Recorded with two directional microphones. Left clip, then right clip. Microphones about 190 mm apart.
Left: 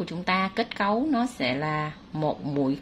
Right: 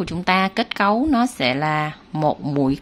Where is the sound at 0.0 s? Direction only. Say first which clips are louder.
Right 7 dB; 30° right (ahead or behind).